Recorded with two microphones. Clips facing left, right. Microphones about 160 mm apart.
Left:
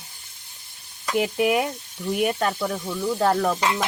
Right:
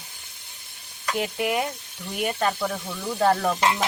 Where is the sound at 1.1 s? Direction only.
10° left (ahead or behind).